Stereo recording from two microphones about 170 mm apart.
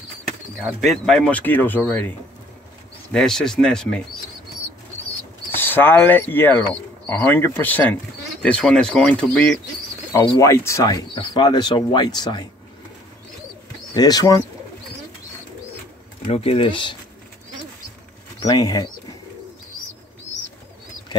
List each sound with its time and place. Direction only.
0.6 s speech: 5° right (ahead or behind)
5.5 s speech: 10° left (ahead or behind)
10.1 s speech: 20° left (ahead or behind)
13.9 s speech: 25° left (ahead or behind)
16.3 s speech: 35° left (ahead or behind)
18.4 s speech: 20° left (ahead or behind)